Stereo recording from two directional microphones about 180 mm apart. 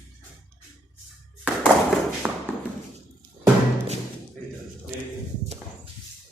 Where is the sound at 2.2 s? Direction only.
5° right (ahead or behind).